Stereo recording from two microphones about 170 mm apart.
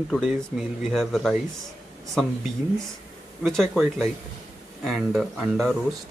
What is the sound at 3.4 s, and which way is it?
Speech, centre (ahead or behind).